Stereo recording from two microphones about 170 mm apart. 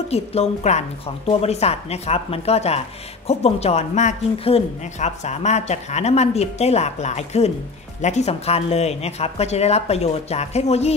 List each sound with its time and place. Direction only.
0.1 s speech: 40° left (ahead or behind)